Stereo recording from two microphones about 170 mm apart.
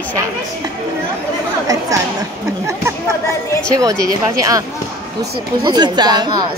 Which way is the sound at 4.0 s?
20° right (ahead or behind).